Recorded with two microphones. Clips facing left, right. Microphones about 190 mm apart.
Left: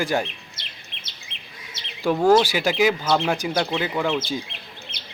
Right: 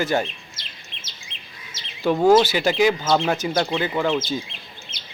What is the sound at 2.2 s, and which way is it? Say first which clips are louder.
Speech: right 2 dB; 10° right (ahead or behind).